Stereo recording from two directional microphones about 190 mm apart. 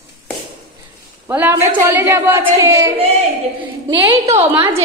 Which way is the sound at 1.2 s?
10° right (ahead or behind).